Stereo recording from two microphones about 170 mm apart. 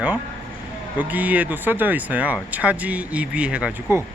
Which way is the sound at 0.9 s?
10° right (ahead or behind).